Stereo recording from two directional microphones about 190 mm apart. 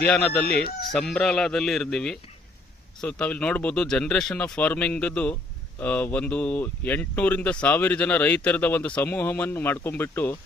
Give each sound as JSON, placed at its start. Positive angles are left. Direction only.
{"t": 0.3, "sound": "speech", "side_deg": 55}
{"t": 0.9, "sound": "speech", "side_deg": 5}